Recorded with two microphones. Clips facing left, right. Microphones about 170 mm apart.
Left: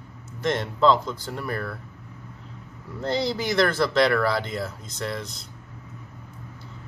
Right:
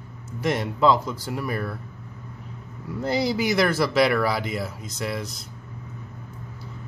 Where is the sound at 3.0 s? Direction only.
10° right (ahead or behind).